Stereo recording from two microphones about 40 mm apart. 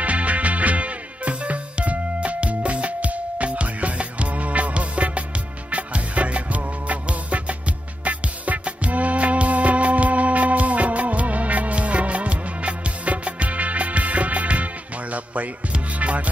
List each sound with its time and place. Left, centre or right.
0.0 s music: right